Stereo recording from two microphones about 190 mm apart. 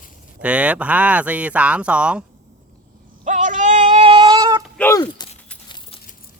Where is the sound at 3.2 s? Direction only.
40° right (ahead or behind); by 4.6 s 20° right (ahead or behind).